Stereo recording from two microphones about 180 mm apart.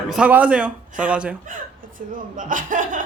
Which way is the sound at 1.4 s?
45° right (ahead or behind).